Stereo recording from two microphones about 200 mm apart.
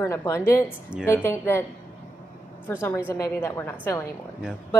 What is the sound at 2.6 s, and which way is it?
A woman's voice, 10° left (ahead or behind).